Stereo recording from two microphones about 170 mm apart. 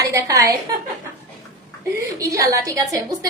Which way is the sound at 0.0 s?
20° right (ahead or behind).